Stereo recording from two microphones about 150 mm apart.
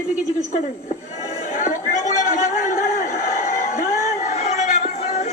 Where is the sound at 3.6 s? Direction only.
55° left (ahead or behind).